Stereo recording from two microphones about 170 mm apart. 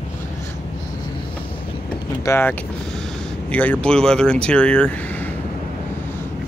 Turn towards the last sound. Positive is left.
turn(degrees=10)  # may be behind; listen again after turning